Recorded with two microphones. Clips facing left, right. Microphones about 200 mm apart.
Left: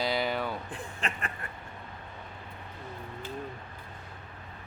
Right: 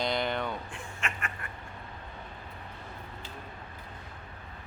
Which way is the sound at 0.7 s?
35° left (ahead or behind).